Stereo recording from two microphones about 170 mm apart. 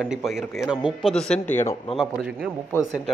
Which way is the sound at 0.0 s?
Centre (ahead or behind).